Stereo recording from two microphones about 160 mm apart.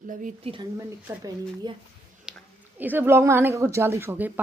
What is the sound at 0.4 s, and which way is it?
Speech, 35° right (ahead or behind).